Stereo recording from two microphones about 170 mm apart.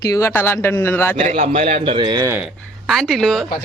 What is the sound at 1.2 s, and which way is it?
A man's voice, 40° right (ahead or behind).